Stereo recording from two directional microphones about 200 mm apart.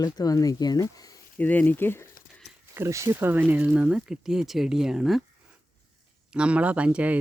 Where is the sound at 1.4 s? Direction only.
10° left (ahead or behind).